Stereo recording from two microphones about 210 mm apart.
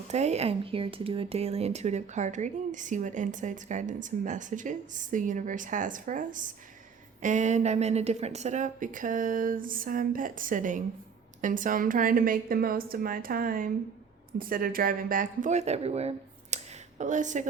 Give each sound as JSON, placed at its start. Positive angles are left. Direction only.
{"t": 0.1, "sound": "speech", "side_deg": -30}